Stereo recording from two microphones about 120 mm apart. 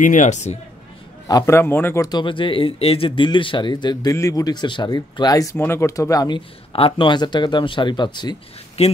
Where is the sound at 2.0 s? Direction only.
40° left (ahead or behind).